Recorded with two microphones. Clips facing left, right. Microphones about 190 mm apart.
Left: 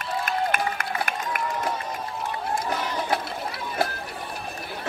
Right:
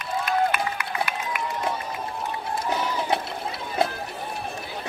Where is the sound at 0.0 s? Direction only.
50° left (ahead or behind).